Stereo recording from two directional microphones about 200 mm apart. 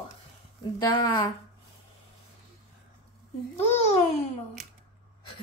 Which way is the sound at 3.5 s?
30° left (ahead or behind).